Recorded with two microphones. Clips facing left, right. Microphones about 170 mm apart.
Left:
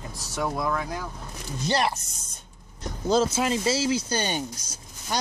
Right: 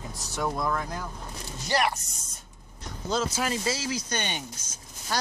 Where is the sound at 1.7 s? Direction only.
25° left (ahead or behind).